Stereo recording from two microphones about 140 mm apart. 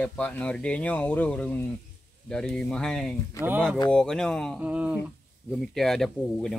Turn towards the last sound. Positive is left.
turn(degrees=5)  # may be behind; listen again after turning